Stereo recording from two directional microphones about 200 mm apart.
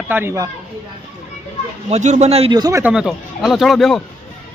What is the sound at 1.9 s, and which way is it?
Speech, 35° right (ahead or behind).